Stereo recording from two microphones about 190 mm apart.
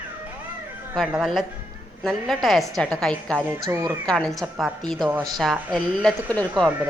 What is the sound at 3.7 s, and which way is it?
Speech, 20° right (ahead or behind).